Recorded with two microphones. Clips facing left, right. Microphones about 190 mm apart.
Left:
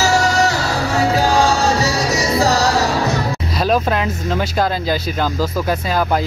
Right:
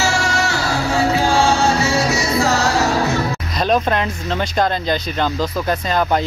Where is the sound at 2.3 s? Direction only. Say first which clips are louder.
Left 2 dB; 35° left (ahead or behind).